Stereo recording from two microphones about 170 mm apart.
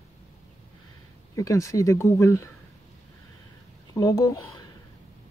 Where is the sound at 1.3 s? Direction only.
20° left (ahead or behind).